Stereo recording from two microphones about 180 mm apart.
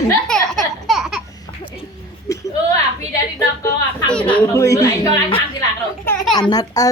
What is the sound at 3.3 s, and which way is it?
Speech, 20° left (ahead or behind).